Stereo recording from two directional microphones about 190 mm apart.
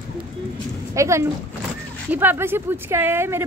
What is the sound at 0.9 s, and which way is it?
Speech, 15° right (ahead or behind).